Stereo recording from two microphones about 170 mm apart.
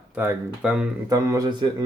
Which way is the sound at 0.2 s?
10° right (ahead or behind).